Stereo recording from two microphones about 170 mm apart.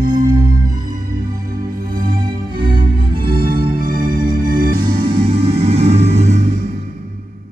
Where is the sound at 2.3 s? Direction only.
25° right (ahead or behind).